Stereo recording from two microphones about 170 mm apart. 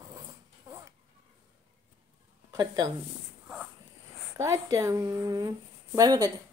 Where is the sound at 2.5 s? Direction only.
25° right (ahead or behind).